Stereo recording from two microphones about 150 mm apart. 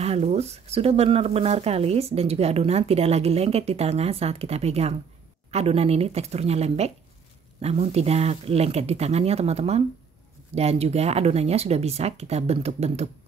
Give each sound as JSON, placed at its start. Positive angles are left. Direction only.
{"t": 0.0, "sound": "speech", "side_deg": -45}